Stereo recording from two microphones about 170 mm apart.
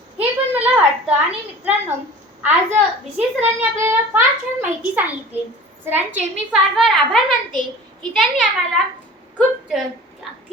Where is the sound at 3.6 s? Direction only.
15° right (ahead or behind).